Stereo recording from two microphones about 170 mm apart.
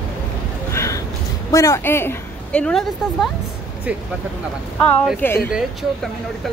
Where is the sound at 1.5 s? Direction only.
15° left (ahead or behind).